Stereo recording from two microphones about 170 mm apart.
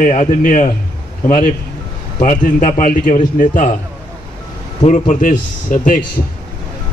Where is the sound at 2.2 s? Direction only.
50° left (ahead or behind).